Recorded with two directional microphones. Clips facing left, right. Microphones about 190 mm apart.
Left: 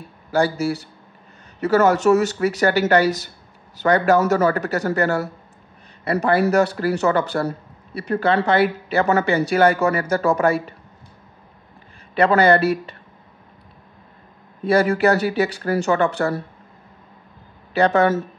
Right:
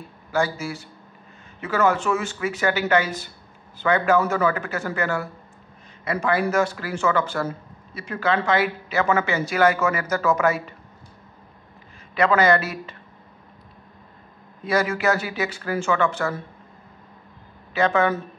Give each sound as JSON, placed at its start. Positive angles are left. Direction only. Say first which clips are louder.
{"t": 0.3, "sound": "speech", "louder": "left 5 dB", "side_deg": 35}
{"t": 12.2, "sound": "speech", "louder": "left 4 dB", "side_deg": 35}
{"t": 14.6, "sound": "speech", "louder": "left 6 dB", "side_deg": 30}
{"t": 17.7, "sound": "speech", "louder": "left 4 dB", "side_deg": 35}